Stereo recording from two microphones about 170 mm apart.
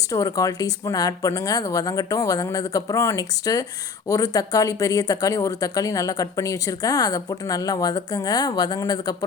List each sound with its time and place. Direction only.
0.1 s speech: 20° left (ahead or behind)